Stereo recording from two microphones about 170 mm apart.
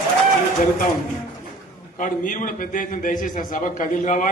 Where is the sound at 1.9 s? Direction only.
50° left (ahead or behind).